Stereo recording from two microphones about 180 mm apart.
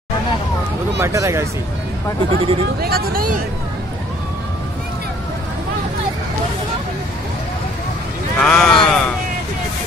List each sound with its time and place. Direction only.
0.9 s speech: 15° right (ahead or behind)
2.3 s speech: 30° right (ahead or behind)
2.8 s speech: 55° right (ahead or behind)
8.4 s speech: centre (ahead or behind)